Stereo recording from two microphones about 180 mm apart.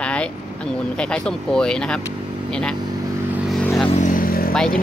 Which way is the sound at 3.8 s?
40° left (ahead or behind).